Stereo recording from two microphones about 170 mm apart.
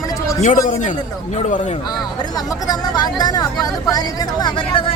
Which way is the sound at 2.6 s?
25° left (ahead or behind).